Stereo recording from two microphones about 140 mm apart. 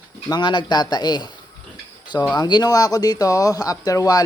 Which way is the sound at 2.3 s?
30° left (ahead or behind).